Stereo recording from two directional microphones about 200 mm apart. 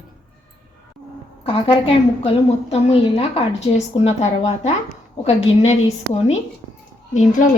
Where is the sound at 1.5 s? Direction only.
25° left (ahead or behind).